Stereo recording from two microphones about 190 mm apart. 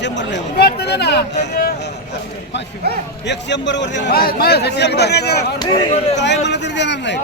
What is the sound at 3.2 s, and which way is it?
A man's voice, 65° left (ahead or behind).